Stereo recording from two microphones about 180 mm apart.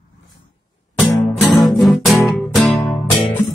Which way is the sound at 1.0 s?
5° left (ahead or behind).